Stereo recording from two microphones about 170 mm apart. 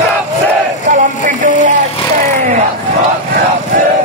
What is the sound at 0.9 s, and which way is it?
Music, 50° right (ahead or behind).